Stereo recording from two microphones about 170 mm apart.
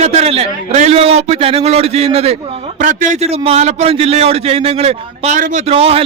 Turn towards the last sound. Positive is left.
turn(degrees=-35)  # may be behind; listen again after turning